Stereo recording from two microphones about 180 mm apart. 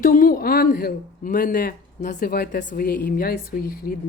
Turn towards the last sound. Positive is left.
turn(degrees=55)  # may be behind; listen again after turning